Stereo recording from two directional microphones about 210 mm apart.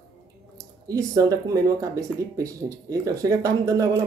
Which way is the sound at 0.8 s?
15° right (ahead or behind).